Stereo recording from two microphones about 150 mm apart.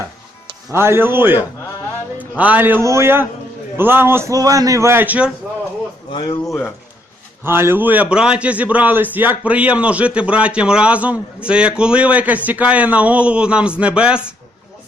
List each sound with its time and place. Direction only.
0.7 s a man's voice: 15° right (ahead or behind)
2.4 s a man's voice: 10° right (ahead or behind)
6.1 s speech: 35° left (ahead or behind)
7.4 s a man's voice: 15° right (ahead or behind)